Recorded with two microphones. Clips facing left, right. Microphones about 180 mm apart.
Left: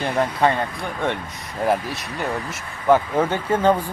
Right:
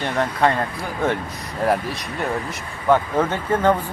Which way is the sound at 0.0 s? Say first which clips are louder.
Even; centre (ahead or behind).